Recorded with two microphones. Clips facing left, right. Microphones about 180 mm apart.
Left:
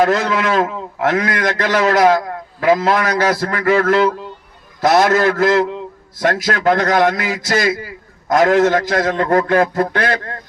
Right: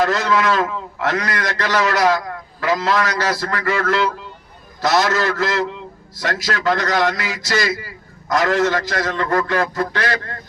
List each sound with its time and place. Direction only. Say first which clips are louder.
0.0 s a man's voice: left 2 dB; 50° left (ahead or behind)